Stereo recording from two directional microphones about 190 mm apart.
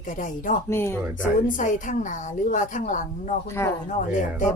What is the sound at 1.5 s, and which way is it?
A woman's voice, 45° left (ahead or behind).